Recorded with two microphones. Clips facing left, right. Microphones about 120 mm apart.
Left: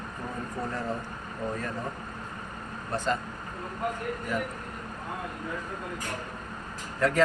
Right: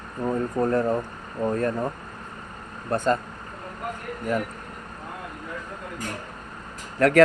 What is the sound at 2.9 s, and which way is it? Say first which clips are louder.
Speech: right 6 dB; 50° right (ahead or behind).